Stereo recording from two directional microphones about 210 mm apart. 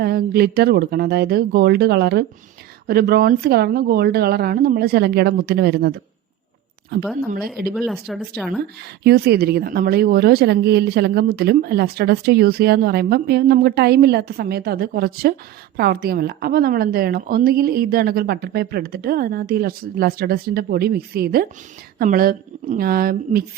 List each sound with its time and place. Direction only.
0.0 s speech: 50° right (ahead or behind)
7.7 s speech: centre (ahead or behind)
9.0 s speech: 50° right (ahead or behind)